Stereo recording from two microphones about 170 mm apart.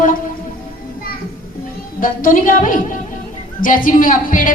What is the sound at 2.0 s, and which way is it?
A woman's voice, 55° left (ahead or behind).